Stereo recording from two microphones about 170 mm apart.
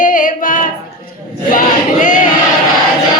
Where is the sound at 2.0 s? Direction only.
50° left (ahead or behind).